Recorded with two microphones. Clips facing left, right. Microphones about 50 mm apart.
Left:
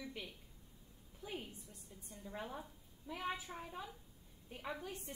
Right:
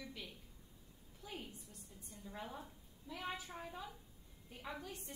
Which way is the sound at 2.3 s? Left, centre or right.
Centre.